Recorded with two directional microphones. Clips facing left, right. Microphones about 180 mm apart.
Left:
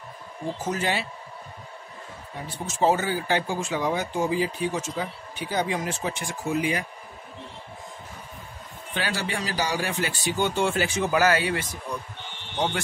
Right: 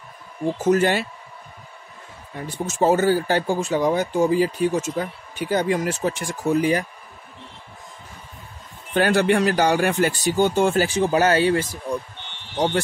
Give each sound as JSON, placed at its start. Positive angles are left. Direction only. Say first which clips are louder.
{"t": 0.7, "sound": "speech", "louder": "right 10 dB", "side_deg": -55}
{"t": 2.4, "sound": "speech", "louder": "right 3 dB", "side_deg": -50}
{"t": 8.9, "sound": "speech", "louder": "right 12 dB", "side_deg": -55}